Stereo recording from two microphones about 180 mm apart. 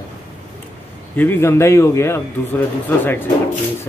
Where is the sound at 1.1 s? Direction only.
10° left (ahead or behind).